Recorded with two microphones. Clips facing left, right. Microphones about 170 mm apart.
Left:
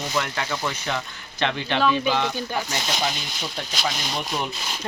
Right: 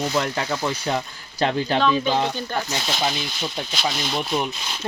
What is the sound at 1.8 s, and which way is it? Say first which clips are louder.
Speech: left 1 dB; 5° left (ahead or behind).